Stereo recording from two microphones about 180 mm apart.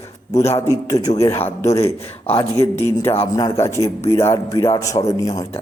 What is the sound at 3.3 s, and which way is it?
A man's voice, 20° left (ahead or behind).